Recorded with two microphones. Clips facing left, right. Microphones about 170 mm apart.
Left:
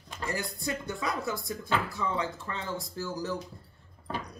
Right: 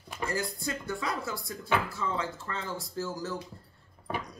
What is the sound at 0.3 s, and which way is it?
Speech, 20° left (ahead or behind).